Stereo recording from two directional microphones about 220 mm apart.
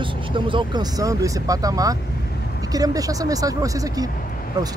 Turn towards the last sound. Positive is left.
turn(degrees=-15)  # may be behind; listen again after turning